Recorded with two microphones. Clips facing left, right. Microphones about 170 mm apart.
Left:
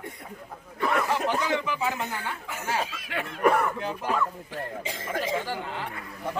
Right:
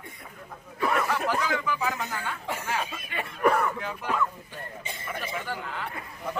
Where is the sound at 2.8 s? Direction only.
90° left.